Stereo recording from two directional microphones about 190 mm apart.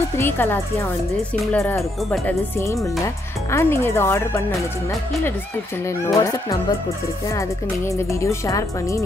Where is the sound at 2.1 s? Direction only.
10° left (ahead or behind).